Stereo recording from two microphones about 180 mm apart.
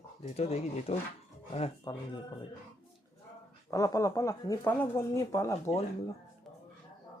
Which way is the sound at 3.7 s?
15° left (ahead or behind).